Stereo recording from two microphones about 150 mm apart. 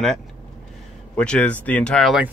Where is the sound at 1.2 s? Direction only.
5° left (ahead or behind).